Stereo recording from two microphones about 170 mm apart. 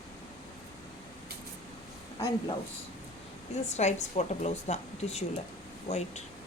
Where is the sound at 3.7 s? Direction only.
40° left (ahead or behind).